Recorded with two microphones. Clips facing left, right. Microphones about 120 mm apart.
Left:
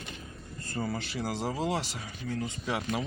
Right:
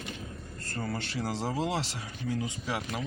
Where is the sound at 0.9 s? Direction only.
Centre (ahead or behind).